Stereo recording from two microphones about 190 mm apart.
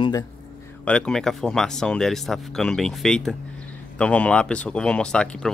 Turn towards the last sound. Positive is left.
turn(degrees=5)  # may be behind; listen again after turning